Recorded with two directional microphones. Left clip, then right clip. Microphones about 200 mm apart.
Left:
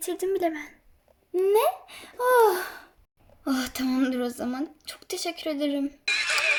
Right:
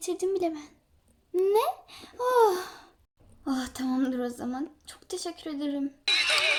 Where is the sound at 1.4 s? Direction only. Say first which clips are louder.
Left 4 dB; 30° left (ahead or behind).